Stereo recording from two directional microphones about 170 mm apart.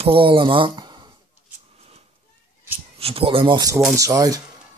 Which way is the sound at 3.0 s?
35° right (ahead or behind).